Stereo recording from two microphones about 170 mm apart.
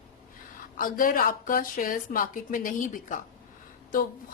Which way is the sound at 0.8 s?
55° left (ahead or behind).